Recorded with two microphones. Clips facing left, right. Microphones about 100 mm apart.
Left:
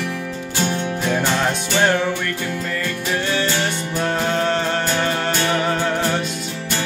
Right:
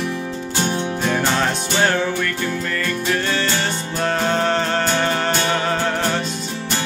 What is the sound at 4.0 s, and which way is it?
Music, 15° left (ahead or behind).